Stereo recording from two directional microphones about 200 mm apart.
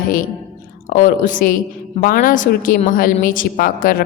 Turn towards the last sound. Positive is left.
turn(degrees=45)  # may be behind; listen again after turning